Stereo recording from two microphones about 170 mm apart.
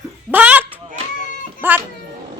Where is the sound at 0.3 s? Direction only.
10° right (ahead or behind).